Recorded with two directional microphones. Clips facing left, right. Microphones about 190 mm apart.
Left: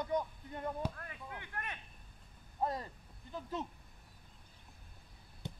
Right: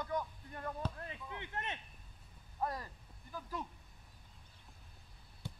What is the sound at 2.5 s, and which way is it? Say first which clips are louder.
Speech: left 3 dB; 25° left (ahead or behind).